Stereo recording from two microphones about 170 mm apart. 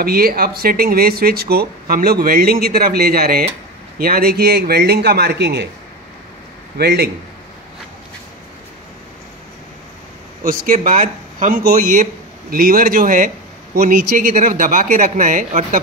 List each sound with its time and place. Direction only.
0.0 s a man's voice: 65° right (ahead or behind); by 5.7 s 80° right
6.8 s a man's voice: 70° right (ahead or behind)
10.4 s speech: 55° right (ahead or behind)